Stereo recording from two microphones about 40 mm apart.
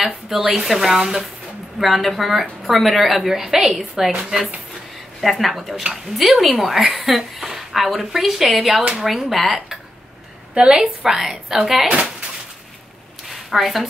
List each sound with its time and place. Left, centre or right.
0.0 s a woman's voice: centre
1.8 s a woman's voice: centre
5.2 s a woman's voice: centre
10.5 s a woman's voice: right
11.0 s a woman's voice: centre
13.3 s a sound: centre